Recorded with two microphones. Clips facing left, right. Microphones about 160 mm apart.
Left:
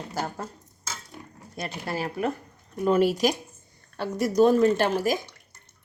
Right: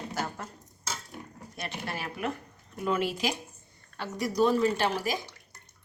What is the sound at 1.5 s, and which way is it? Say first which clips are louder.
A woman's voice: left 6 dB; 35° left (ahead or behind).